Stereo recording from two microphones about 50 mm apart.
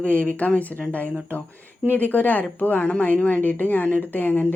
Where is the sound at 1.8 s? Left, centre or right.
Left.